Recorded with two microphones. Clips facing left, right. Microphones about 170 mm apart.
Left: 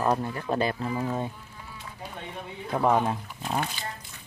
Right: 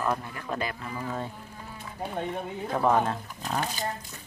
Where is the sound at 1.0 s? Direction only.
15° left (ahead or behind).